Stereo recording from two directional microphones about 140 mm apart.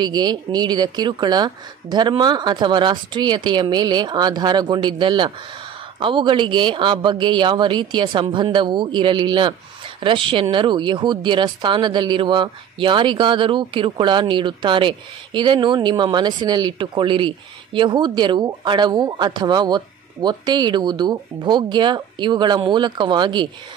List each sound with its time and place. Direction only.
0.0 s speech: 30° right (ahead or behind)